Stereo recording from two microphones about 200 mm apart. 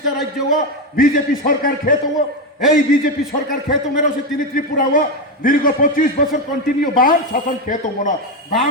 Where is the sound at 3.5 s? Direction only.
45° left (ahead or behind).